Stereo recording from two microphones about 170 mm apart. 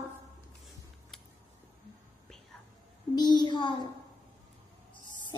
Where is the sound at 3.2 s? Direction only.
25° left (ahead or behind).